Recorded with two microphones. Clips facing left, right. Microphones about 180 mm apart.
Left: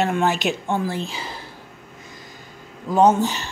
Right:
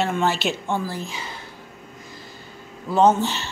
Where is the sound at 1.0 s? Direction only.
35° left (ahead or behind).